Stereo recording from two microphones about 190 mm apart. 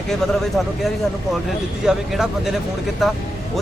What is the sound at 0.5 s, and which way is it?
Speech, centre (ahead or behind).